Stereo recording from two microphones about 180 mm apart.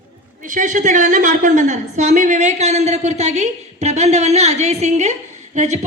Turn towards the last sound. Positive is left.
turn(degrees=-40)  # may be behind; listen again after turning